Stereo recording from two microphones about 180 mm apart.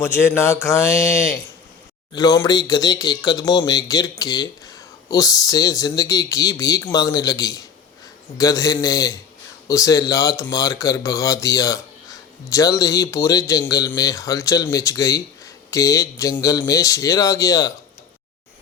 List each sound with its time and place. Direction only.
0.0 s speech: 15° left (ahead or behind)